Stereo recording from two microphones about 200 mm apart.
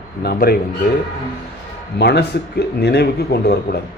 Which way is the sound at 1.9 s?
55° left (ahead or behind).